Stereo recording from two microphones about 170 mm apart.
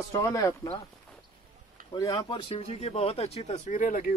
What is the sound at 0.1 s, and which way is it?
Speech, 20° left (ahead or behind).